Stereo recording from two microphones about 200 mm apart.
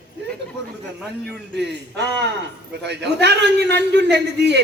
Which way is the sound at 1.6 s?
60° right (ahead or behind).